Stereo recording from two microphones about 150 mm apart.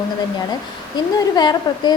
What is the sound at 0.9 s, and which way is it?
A woman's voice, 30° left (ahead or behind).